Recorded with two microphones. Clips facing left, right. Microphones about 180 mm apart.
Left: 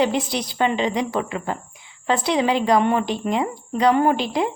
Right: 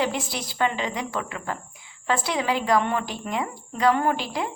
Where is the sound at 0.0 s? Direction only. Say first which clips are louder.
Left 6 dB; 20° left (ahead or behind).